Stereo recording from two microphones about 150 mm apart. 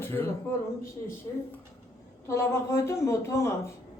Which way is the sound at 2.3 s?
20° left (ahead or behind).